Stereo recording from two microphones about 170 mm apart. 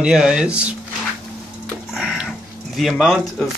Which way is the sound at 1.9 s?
5° right (ahead or behind).